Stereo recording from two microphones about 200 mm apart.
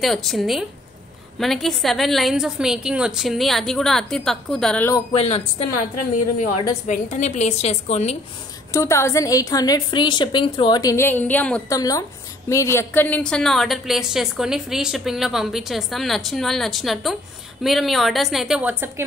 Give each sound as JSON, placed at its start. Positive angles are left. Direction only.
{"t": 0.0, "sound": "a woman's voice", "side_deg": 0}
{"t": 5.1, "sound": "a woman's voice", "side_deg": 30}
{"t": 6.9, "sound": "a woman's voice", "side_deg": 35}
{"t": 8.7, "sound": "a woman's voice", "side_deg": 15}
{"t": 11.7, "sound": "a woman's voice", "side_deg": 20}